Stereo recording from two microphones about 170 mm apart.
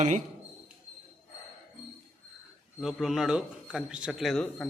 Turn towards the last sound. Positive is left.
turn(degrees=5)  # may be behind; listen again after turning